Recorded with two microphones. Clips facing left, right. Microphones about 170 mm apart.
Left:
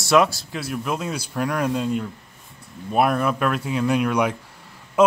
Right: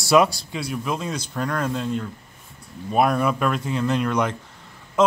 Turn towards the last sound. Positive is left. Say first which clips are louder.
# left 2 dB
turn(degrees=10)  # may be behind; listen again after turning